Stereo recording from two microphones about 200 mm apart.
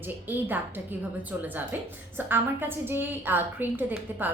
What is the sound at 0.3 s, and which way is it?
A woman's voice, 10° right (ahead or behind).